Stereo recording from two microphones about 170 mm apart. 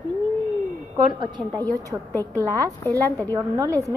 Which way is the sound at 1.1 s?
25° right (ahead or behind).